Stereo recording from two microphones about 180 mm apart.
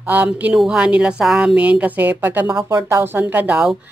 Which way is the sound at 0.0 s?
10° right (ahead or behind).